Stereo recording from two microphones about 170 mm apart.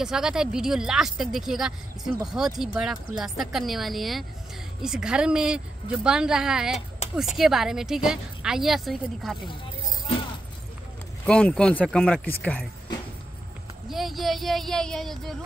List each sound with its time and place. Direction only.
0.0 s a woman's voice: 5° right (ahead or behind)
7.0 s a sound: 40° left (ahead or behind)
7.3 s a woman's voice: centre (ahead or behind)
11.2 s speech: 5° left (ahead or behind)
13.8 s a woman's voice: centre (ahead or behind)